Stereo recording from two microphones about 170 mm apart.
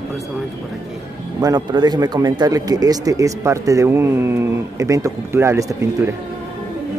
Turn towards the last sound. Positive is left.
turn(degrees=-15)  # may be behind; listen again after turning